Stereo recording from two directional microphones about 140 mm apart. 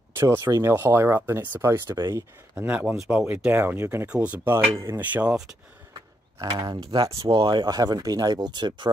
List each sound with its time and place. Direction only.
0.1 s speech: 20° right (ahead or behind)
2.5 s speech: 10° right (ahead or behind)
6.6 s speech: 30° right (ahead or behind)